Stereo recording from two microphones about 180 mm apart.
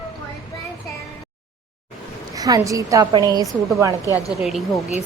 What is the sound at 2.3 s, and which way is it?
A woman's voice, 20° right (ahead or behind).